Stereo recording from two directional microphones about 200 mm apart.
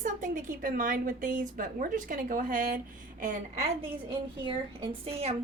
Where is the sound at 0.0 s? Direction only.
40° right (ahead or behind).